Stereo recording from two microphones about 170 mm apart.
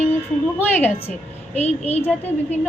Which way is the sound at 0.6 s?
10° left (ahead or behind).